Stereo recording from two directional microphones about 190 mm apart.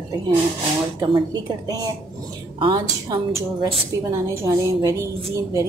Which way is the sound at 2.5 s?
25° right (ahead or behind).